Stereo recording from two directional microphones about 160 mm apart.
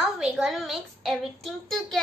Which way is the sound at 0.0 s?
Centre (ahead or behind).